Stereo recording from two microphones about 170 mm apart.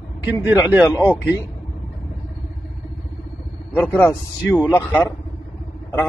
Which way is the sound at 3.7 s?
10° left (ahead or behind).